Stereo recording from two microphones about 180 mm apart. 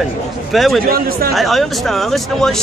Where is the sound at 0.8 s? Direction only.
55° right (ahead or behind).